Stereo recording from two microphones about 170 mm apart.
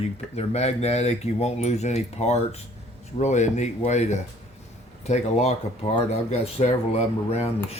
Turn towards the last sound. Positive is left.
turn(degrees=40)  # may be behind; listen again after turning